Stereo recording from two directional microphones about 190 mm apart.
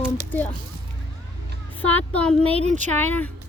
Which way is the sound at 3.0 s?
10° left (ahead or behind).